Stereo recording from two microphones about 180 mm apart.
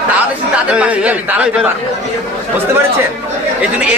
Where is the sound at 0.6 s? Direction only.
5° right (ahead or behind).